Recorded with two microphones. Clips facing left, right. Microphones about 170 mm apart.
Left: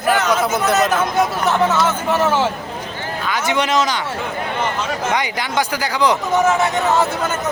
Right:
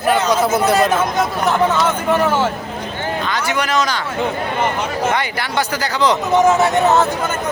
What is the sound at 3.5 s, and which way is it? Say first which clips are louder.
Speech: left 2 dB; 25° left (ahead or behind).